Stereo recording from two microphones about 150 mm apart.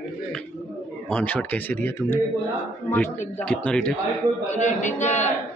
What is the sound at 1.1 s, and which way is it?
Speech, 10° left (ahead or behind).